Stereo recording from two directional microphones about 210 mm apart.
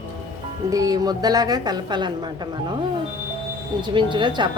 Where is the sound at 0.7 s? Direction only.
15° right (ahead or behind).